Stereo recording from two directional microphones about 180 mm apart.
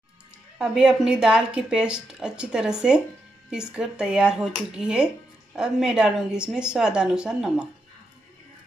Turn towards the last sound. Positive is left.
turn(degrees=-5)  # may be behind; listen again after turning